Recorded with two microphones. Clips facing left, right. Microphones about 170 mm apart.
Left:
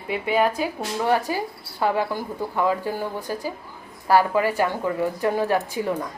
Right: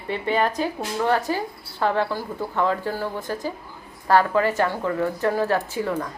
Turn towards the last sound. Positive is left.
turn(degrees=15)  # may be behind; listen again after turning